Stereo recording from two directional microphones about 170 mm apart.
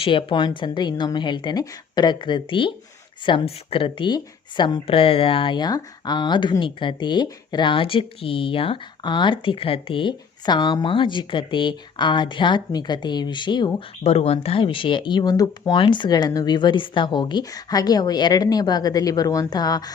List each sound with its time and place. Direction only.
0.0 s speech: 30° left (ahead or behind)